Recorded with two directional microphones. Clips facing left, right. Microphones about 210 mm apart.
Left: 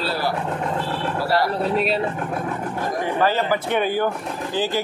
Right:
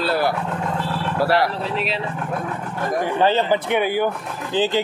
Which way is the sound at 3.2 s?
25° right (ahead or behind).